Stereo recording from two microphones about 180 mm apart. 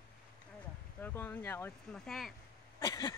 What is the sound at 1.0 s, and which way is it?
Speech, 10° left (ahead or behind).